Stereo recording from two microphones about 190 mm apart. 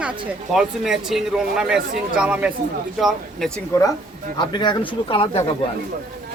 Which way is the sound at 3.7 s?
15° left (ahead or behind).